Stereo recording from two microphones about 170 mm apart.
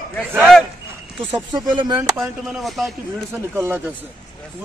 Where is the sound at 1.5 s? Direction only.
25° right (ahead or behind).